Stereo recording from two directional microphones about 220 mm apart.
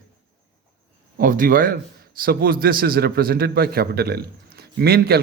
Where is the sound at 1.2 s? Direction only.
40° right (ahead or behind).